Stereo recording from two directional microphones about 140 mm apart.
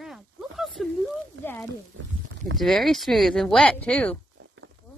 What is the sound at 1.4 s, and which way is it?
Speech, 15° left (ahead or behind).